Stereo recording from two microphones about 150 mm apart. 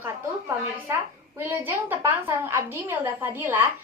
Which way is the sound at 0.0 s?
15° right (ahead or behind).